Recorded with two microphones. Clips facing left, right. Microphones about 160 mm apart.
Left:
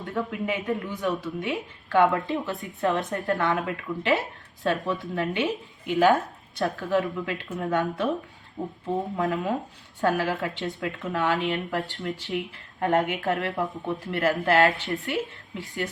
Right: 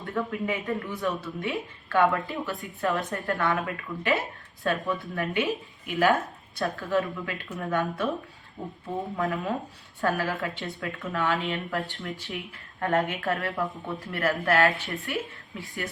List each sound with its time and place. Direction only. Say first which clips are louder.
0.0 s speech: left 1 dB; 20° left (ahead or behind)